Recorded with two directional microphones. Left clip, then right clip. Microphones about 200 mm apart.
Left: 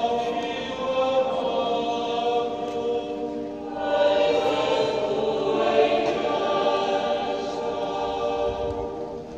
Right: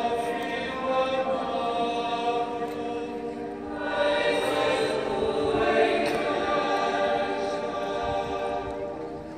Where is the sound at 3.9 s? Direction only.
35° left (ahead or behind).